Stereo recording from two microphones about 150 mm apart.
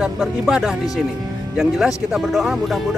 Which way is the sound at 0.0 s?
5° right (ahead or behind).